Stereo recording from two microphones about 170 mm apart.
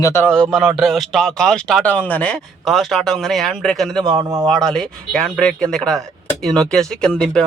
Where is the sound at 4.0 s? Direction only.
25° right (ahead or behind).